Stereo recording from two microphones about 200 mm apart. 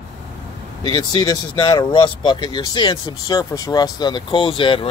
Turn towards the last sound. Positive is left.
turn(degrees=25)  # may be behind; listen again after turning